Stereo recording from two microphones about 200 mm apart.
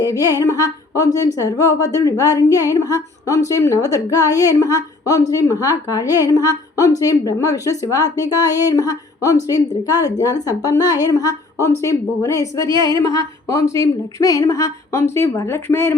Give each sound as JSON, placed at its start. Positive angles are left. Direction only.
{"t": 0.0, "sound": "speech", "side_deg": 20}
{"t": 12.6, "sound": "a woman's voice", "side_deg": -20}
{"t": 13.0, "sound": "speech", "side_deg": 15}